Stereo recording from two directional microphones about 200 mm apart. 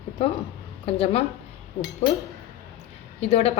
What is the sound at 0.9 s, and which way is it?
Speech, 30° left (ahead or behind).